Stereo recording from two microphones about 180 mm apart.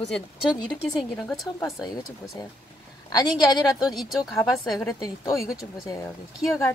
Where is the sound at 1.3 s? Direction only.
Centre (ahead or behind).